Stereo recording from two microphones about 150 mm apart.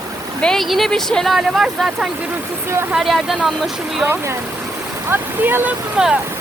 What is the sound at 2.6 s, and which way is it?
Speech, 15° right (ahead or behind).